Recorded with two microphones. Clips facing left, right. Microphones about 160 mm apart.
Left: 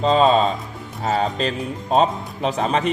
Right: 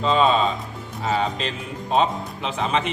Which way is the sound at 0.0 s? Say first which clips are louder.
Left 3 dB; 40° left (ahead or behind).